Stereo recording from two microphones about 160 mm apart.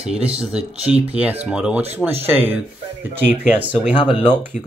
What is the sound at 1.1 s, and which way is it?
Speech, 10° right (ahead or behind).